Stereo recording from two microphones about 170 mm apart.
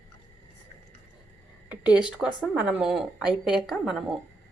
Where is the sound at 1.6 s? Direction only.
10° right (ahead or behind).